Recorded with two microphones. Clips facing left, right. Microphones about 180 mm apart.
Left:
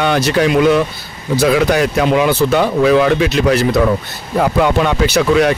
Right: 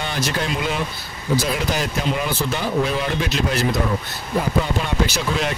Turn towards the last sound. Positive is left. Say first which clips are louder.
# left 11 dB
turn(degrees=70)  # may be behind; listen again after turning